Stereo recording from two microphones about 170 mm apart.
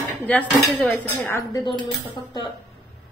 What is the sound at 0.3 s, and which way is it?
Speech, 5° left (ahead or behind).